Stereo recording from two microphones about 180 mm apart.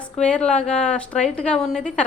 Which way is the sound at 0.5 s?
35° left (ahead or behind).